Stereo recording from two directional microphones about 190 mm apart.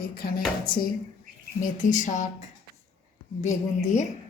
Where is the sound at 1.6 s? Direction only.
40° left (ahead or behind).